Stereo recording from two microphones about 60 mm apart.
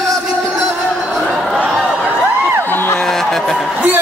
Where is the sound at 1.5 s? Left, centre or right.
Centre.